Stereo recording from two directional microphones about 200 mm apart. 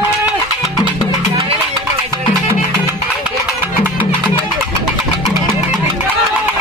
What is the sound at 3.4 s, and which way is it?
Music, 10° right (ahead or behind).